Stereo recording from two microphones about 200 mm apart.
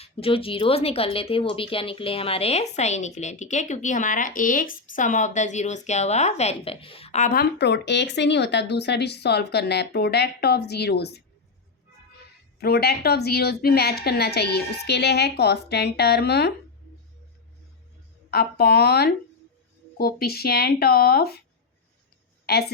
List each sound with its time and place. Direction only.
0.0 s speech: 30° left (ahead or behind)
7.6 s speech: 60° left (ahead or behind)
12.5 s a woman's voice: 50° left (ahead or behind)
18.3 s a woman's voice: 50° left (ahead or behind)